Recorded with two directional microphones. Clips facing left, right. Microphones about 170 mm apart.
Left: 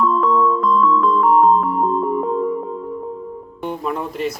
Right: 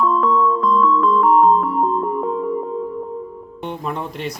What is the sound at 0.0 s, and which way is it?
Music, centre (ahead or behind).